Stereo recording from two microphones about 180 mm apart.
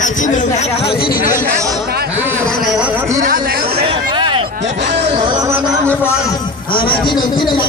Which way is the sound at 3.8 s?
30° right (ahead or behind).